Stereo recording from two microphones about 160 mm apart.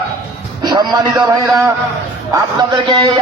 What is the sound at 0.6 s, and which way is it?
A man's voice, 25° right (ahead or behind).